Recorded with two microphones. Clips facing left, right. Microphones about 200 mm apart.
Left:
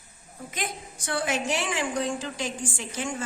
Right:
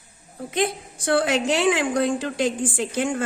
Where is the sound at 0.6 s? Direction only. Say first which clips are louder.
Right 11 dB; 65° right (ahead or behind).